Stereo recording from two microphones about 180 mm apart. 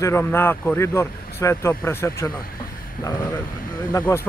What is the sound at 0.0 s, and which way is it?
Speech, 15° left (ahead or behind).